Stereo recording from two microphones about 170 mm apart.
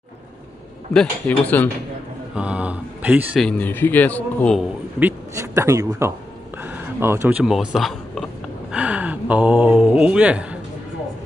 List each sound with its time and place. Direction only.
0.9 s speech: 10° left (ahead or behind)
2.3 s speech: 5° right (ahead or behind)
3.3 s speech: 5° left (ahead or behind)
5.3 s a man's voice: 15° right (ahead or behind)
6.6 s a sound: 15° right (ahead or behind)
8.7 s speech: 10° right (ahead or behind)